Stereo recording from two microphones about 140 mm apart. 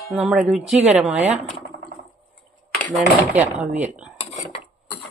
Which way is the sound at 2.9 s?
5° right (ahead or behind).